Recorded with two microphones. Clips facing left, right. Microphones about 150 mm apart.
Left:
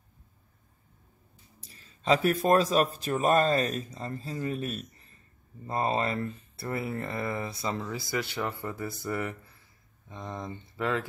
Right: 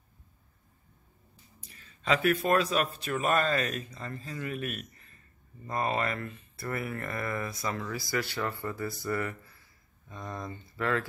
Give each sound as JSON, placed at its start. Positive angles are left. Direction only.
{"t": 1.7, "sound": "speech", "side_deg": 35}